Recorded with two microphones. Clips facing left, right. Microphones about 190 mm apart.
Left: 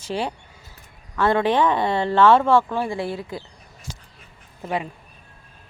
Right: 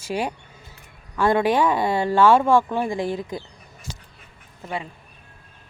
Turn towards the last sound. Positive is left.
turn(degrees=20)  # may be behind; listen again after turning